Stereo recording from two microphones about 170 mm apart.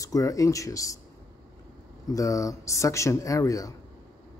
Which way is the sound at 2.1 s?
20° left (ahead or behind).